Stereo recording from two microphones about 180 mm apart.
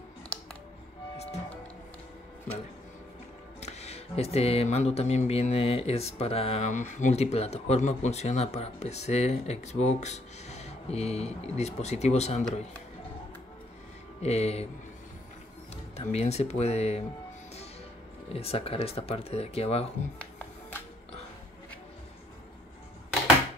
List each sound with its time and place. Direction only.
1.1 s music: 35° left (ahead or behind)
3.6 s speech: 35° left (ahead or behind)
14.2 s speech: 35° left (ahead or behind)
16.0 s speech: 35° left (ahead or behind)
18.3 s speech: 35° left (ahead or behind)
20.2 s music: 10° left (ahead or behind)